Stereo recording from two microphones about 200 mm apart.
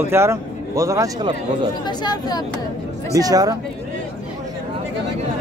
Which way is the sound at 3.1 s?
20° right (ahead or behind).